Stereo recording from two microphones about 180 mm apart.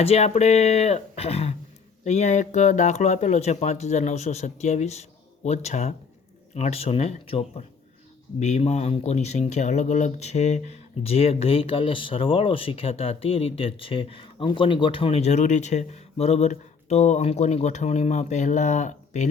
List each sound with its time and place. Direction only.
0.0 s speech: 35° left (ahead or behind)